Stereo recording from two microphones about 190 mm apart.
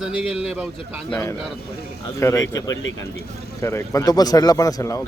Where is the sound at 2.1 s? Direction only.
15° left (ahead or behind).